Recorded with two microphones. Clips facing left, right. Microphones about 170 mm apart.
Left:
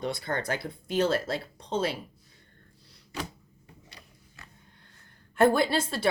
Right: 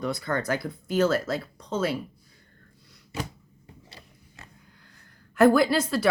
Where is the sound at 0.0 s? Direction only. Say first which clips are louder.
Right 3 dB; 25° left (ahead or behind).